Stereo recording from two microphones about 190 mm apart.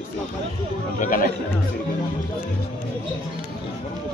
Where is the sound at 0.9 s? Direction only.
45° left (ahead or behind).